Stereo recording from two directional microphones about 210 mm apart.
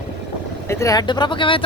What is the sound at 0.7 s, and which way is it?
Speech, 15° left (ahead or behind).